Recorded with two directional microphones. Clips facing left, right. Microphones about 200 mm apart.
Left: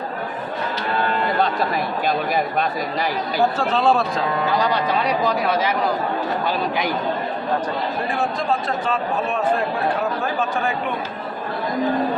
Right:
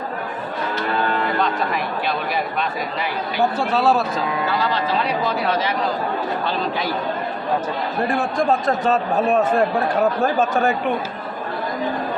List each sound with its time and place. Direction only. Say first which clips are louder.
1.4 s speech: left 1 dB; 40° left (ahead or behind)
3.6 s speech: right 2 dB; 10° right (ahead or behind)
4.4 s speech: left 3 dB; 15° left (ahead or behind)
8.4 s a man's voice: right 4 dB; 45° right (ahead or behind)